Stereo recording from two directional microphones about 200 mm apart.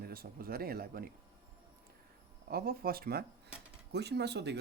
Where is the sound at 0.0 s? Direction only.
50° right (ahead or behind).